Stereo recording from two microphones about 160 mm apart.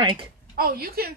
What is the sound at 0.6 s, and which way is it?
Speech, 70° right (ahead or behind).